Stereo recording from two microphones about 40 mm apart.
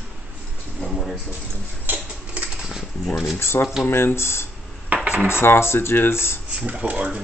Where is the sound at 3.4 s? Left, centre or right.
Left.